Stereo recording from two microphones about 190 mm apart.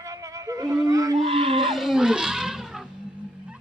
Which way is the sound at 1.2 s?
30° right (ahead or behind).